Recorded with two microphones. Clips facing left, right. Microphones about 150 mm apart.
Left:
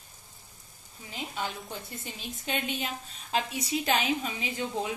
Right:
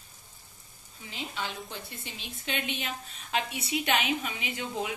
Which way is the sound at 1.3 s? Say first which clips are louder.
Left 2 dB; 45° left (ahead or behind).